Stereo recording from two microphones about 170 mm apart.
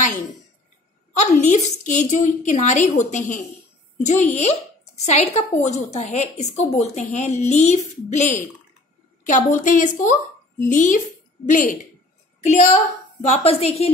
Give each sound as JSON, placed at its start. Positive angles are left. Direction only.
{"t": 1.1, "sound": "a woman's voice", "side_deg": 40}